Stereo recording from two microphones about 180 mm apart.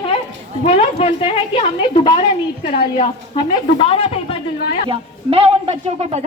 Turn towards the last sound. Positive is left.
turn(degrees=-35)  # may be behind; listen again after turning